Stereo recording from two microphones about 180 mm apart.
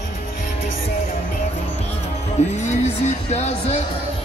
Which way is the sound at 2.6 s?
40° left (ahead or behind).